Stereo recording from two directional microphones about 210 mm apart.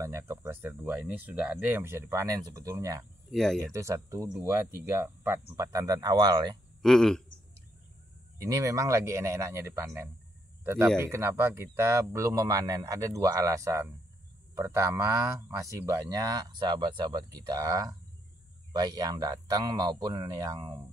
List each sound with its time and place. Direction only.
0.0 s speech: 10° right (ahead or behind)
3.3 s speech: centre (ahead or behind)
3.7 s speech: 15° right (ahead or behind)
6.8 s speech: centre (ahead or behind)
8.4 s speech: 15° right (ahead or behind)